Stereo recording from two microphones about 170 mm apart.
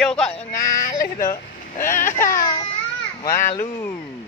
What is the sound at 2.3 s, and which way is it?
Baby cry, 20° left (ahead or behind).